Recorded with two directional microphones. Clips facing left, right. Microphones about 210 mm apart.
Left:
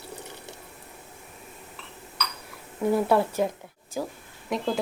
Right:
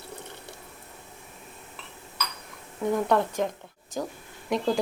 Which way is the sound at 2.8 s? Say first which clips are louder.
Left 2 dB; 5° left (ahead or behind).